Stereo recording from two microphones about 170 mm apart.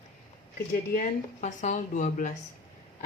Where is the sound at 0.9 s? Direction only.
45° left (ahead or behind).